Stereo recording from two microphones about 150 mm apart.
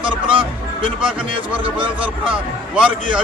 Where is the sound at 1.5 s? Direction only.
35° right (ahead or behind).